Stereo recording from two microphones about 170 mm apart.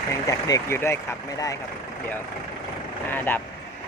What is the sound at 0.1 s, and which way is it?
Speech, 20° left (ahead or behind).